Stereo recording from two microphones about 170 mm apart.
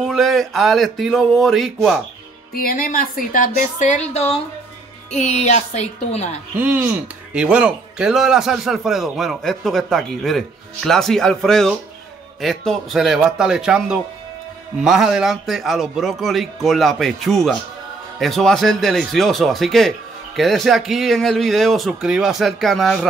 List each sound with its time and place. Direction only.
0.0 s speech: centre (ahead or behind)
2.5 s a woman's voice: 60° left (ahead or behind); by 6.4 s 40° left (ahead or behind)
6.6 s speech: 10° right (ahead or behind)